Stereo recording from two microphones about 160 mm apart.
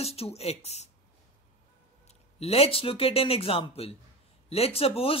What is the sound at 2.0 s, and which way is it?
Speech, 40° left (ahead or behind).